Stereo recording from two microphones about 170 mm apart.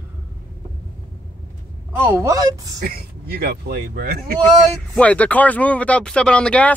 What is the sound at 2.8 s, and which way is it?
Speech, 60° right (ahead or behind).